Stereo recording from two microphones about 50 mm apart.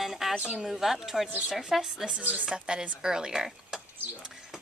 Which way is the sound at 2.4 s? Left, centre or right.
Centre.